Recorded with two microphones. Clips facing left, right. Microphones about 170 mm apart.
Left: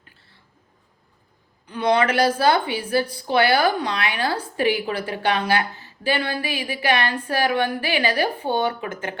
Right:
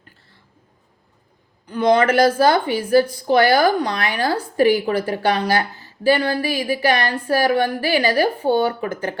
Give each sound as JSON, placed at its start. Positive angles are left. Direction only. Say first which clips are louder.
{"t": 1.6, "sound": "speech", "louder": "right 4 dB", "side_deg": -40}